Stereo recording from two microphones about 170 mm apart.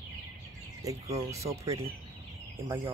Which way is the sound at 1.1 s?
20° right (ahead or behind).